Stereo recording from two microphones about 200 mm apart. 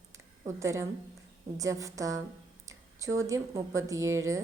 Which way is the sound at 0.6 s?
15° right (ahead or behind).